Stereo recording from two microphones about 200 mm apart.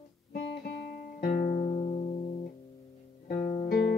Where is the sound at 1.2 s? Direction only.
40° left (ahead or behind).